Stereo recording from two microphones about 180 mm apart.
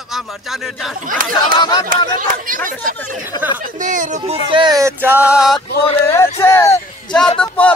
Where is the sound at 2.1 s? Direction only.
50° right (ahead or behind).